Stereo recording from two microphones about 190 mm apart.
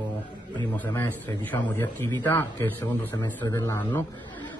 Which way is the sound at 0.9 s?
10° left (ahead or behind).